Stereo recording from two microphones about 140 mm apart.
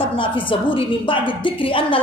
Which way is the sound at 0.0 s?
35° left (ahead or behind).